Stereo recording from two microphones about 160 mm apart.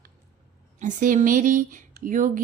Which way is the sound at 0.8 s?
50° right (ahead or behind).